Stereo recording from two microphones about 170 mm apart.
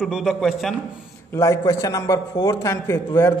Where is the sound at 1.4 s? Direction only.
20° left (ahead or behind).